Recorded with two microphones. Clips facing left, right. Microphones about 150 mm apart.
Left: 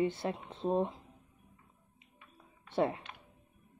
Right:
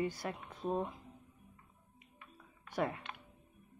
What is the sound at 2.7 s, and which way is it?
Speech, 25° left (ahead or behind).